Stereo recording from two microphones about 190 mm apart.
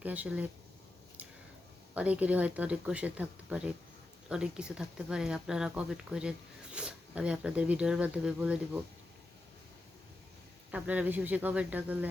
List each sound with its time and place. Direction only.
0.0 s speech: 10° right (ahead or behind)
2.0 s speech: 5° right (ahead or behind)
10.7 s speech: 5° right (ahead or behind)